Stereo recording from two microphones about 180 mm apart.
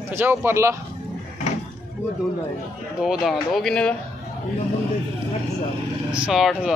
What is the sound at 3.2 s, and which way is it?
Speech, centre (ahead or behind).